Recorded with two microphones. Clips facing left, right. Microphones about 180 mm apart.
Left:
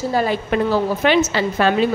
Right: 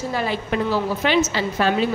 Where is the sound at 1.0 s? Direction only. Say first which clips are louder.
Left 3 dB; 55° left (ahead or behind).